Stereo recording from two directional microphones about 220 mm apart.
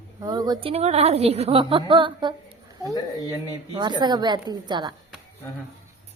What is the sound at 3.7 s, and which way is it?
A woman's voice, 20° right (ahead or behind).